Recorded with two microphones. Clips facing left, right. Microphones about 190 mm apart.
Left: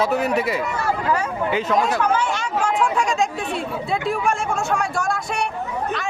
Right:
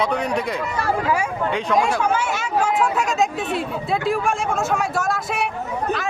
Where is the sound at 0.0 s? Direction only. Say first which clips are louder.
Left 2 dB; 5° left (ahead or behind).